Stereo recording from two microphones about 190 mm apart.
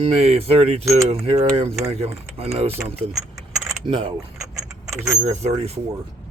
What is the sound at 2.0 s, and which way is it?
Speech, 30° right (ahead or behind).